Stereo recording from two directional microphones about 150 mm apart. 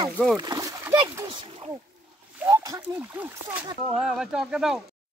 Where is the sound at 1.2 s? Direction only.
35° right (ahead or behind).